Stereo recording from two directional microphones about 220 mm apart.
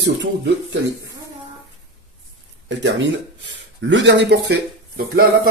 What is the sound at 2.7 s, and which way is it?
Speech, 55° right (ahead or behind).